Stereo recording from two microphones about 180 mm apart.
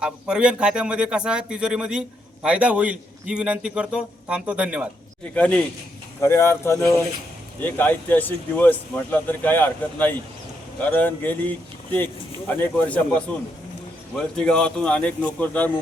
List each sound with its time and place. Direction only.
0.0 s speech: 5° right (ahead or behind)
5.3 s speech: 5° left (ahead or behind)
14.3 s speech: 5° left (ahead or behind)